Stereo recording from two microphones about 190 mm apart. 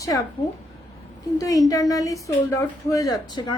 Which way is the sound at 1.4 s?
20° left (ahead or behind).